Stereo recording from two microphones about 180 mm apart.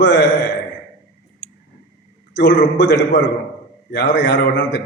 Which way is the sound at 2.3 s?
75° left (ahead or behind).